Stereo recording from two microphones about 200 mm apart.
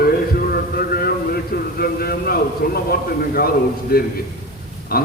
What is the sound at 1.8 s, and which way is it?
A man's voice, 50° left (ahead or behind).